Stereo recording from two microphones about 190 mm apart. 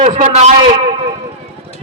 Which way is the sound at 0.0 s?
35° right (ahead or behind).